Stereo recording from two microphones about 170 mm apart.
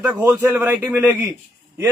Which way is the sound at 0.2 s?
10° right (ahead or behind).